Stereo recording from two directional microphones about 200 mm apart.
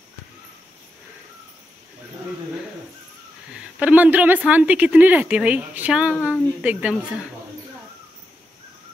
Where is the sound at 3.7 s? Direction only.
5° right (ahead or behind).